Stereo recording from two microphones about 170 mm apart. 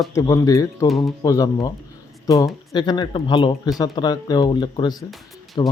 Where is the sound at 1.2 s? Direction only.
20° left (ahead or behind).